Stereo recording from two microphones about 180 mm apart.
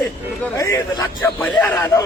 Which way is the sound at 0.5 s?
20° left (ahead or behind).